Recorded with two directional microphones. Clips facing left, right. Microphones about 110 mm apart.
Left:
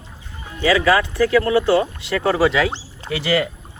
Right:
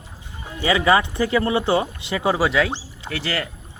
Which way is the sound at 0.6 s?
20° right (ahead or behind).